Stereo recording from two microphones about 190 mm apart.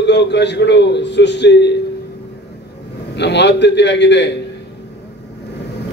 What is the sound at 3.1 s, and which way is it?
A man's voice, 65° left (ahead or behind).